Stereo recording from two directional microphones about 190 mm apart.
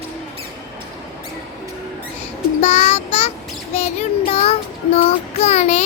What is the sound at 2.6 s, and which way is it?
Child singing, 35° left (ahead or behind).